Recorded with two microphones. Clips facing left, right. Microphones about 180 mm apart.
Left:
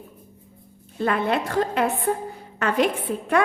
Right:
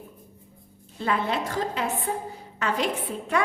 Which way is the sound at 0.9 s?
55° left (ahead or behind).